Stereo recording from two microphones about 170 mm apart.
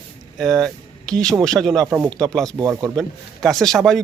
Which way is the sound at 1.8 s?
15° right (ahead or behind).